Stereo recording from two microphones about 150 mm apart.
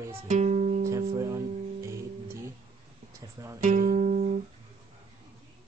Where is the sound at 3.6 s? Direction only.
60° right (ahead or behind).